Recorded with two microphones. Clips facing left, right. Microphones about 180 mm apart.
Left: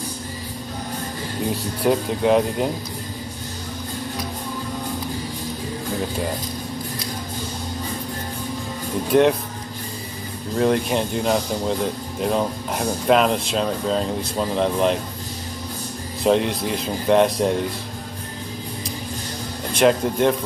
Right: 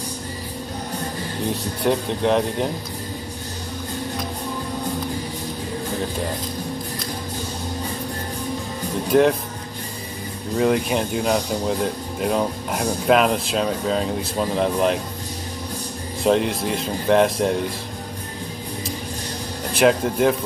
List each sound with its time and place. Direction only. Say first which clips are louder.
1.8 s speech: left 1 dB; 5° left (ahead or behind)
9.1 s speech: even; centre (ahead or behind)
10.5 s speech: even; centre (ahead or behind)
16.3 s speech: even; centre (ahead or behind)
19.7 s speech: even; 5° right (ahead or behind)